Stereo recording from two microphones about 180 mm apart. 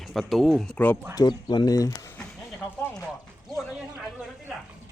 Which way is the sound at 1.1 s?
25° left (ahead or behind).